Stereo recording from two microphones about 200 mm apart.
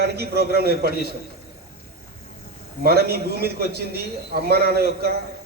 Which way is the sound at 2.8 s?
50° right (ahead or behind).